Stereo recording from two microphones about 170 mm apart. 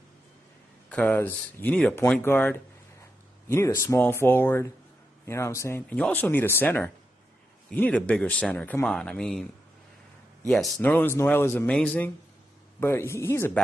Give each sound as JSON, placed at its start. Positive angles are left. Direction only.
{"t": 0.8, "sound": "speech", "side_deg": 10}
{"t": 10.5, "sound": "speech", "side_deg": 5}